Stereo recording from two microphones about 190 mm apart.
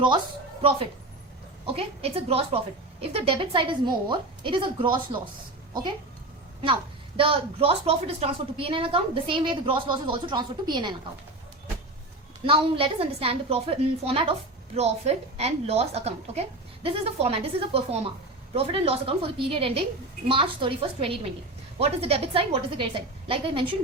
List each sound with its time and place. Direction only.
1.6 s a woman's voice: 30° right (ahead or behind)
7.2 s a woman's voice: 30° right (ahead or behind)
12.5 s a woman's voice: 30° right (ahead or behind)